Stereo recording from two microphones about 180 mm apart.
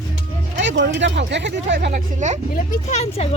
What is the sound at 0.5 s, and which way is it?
Speech, 85° right.